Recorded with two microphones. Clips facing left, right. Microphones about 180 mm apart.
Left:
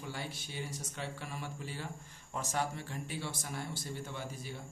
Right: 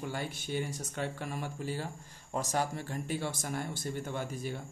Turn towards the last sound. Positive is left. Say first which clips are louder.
# right 6 dB
turn(degrees=-55)  # may be behind; listen again after turning